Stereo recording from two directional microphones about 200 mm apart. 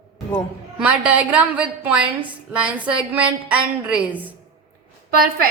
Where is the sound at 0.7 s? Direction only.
5° right (ahead or behind).